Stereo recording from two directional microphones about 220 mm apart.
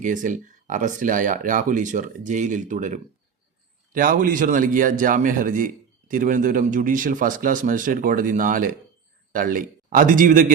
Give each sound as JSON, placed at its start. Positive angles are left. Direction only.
{"t": 0.0, "sound": "a man's voice", "side_deg": -35}